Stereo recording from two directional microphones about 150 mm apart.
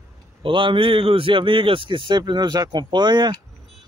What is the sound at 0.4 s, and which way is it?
A man's voice, 35° right (ahead or behind).